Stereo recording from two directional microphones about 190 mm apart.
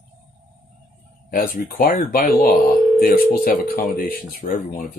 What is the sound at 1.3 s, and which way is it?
Speech, 50° left (ahead or behind).